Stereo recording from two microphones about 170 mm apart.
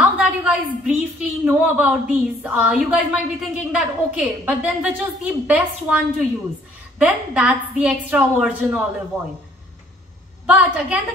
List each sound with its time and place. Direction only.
0.0 s a sound: 10° right (ahead or behind)
1.4 s a woman's voice: 5° right (ahead or behind)
10.4 s a woman's voice: 5° right (ahead or behind)